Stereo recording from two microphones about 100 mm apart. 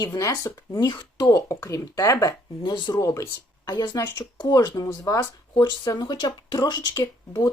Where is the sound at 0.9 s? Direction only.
45° left (ahead or behind).